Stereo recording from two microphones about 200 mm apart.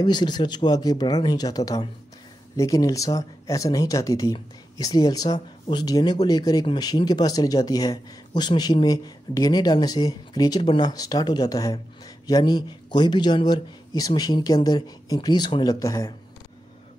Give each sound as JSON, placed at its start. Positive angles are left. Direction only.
{"t": 0.0, "sound": "speech", "side_deg": 20}